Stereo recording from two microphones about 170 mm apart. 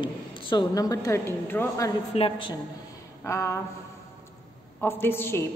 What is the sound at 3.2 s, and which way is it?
Speech, 15° left (ahead or behind).